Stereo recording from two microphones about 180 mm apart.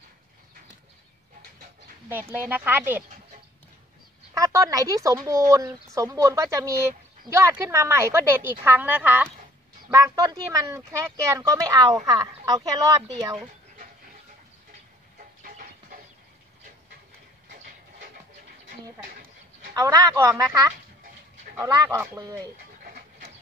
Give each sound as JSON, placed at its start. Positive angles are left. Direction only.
{"t": 2.0, "sound": "speech", "side_deg": -10}
{"t": 4.3, "sound": "speech", "side_deg": -15}
{"t": 15.4, "sound": "music", "side_deg": -50}
{"t": 17.5, "sound": "train", "side_deg": -60}
{"t": 19.0, "sound": "a sound", "side_deg": -55}
{"t": 19.7, "sound": "speech", "side_deg": -20}